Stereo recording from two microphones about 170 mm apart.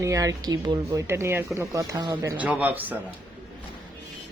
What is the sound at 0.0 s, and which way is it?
Speech, 20° right (ahead or behind).